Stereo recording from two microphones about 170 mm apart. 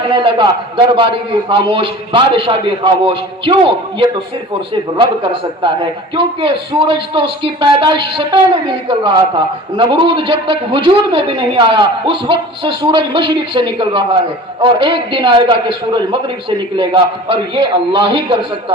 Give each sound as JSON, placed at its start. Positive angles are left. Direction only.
{"t": 0.1, "sound": "a man's voice", "side_deg": -30}